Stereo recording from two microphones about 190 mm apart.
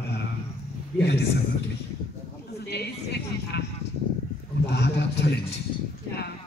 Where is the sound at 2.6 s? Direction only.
60° left (ahead or behind).